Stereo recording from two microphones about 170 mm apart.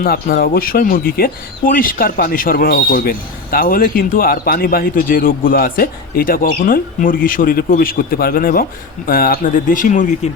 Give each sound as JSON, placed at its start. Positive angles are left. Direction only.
{"t": 0.0, "sound": "speech", "side_deg": 60}